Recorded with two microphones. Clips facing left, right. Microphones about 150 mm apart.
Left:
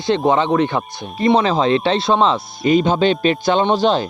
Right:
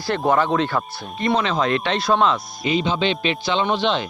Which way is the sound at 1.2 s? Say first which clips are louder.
Left 5 dB; 35° left (ahead or behind).